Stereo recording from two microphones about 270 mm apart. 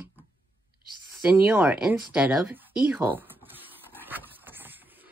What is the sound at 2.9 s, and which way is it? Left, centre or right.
Dog, centre.